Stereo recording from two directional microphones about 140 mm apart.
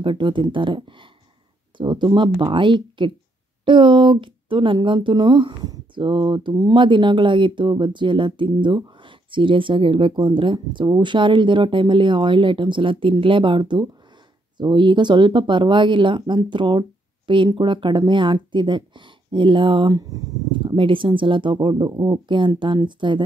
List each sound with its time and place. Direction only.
0.0 s speech: 35° right (ahead or behind)